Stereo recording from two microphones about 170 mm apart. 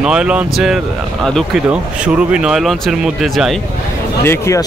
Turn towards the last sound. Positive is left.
turn(degrees=15)  # may be behind; listen again after turning